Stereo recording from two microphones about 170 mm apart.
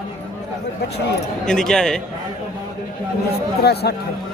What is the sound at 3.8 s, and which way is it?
Speech, 75° left (ahead or behind).